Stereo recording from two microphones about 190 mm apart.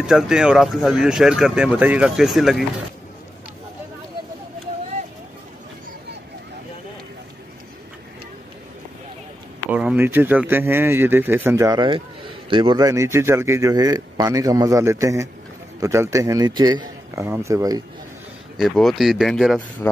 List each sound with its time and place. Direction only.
0.0 s speech: 5° right (ahead or behind)
9.7 s speech: 5° right (ahead or behind)
18.6 s speech: centre (ahead or behind)